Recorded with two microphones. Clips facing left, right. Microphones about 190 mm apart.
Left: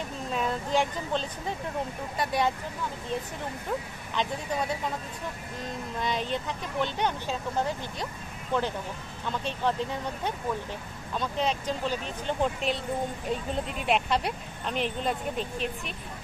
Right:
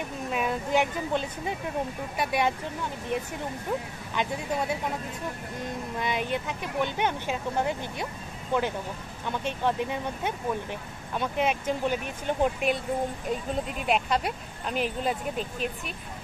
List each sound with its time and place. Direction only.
0.3 s speech: 15° right (ahead or behind)
5.9 s speech: 10° right (ahead or behind)
9.4 s speech: 15° right (ahead or behind)